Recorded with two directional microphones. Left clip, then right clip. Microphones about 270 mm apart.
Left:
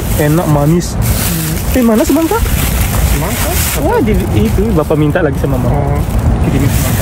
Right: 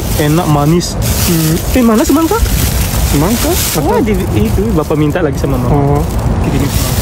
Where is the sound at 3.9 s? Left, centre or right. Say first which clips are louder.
Left 1 dB; centre.